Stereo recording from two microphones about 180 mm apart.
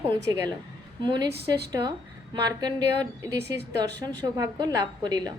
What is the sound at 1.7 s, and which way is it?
A woman's voice, 25° right (ahead or behind).